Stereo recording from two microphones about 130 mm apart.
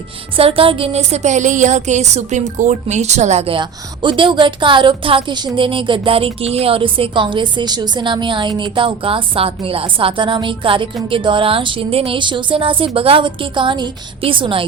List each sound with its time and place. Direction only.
0.3 s a woman's voice: 45° right (ahead or behind)